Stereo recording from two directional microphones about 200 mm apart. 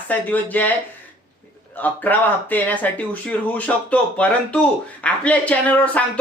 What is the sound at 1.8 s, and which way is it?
Speech, 10° left (ahead or behind).